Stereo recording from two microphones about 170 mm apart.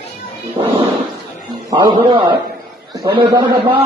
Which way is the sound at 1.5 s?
25° right (ahead or behind).